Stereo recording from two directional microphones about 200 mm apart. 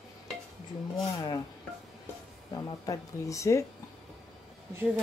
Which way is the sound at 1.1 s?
20° left (ahead or behind).